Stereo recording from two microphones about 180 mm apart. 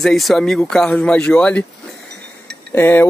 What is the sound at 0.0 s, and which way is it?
Speech, centre (ahead or behind).